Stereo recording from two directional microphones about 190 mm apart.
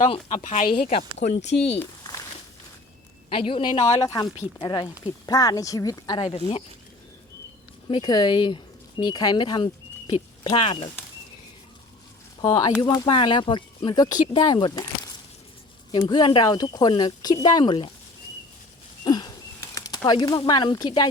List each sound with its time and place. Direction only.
0.3 s speech: 35° left (ahead or behind)
1.8 s a sound: 15° left (ahead or behind)
3.2 s speech: 30° left (ahead or behind)
7.9 s speech: 25° left (ahead or behind)
12.4 s speech: 20° left (ahead or behind)
19.0 s a sound: 20° left (ahead or behind)
19.7 s speech: 20° left (ahead or behind)